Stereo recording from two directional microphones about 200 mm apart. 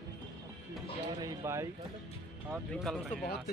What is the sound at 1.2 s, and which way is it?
Speech, 15° right (ahead or behind).